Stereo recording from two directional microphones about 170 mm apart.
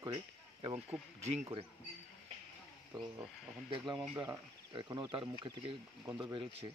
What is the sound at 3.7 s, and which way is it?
Speech, 25° right (ahead or behind).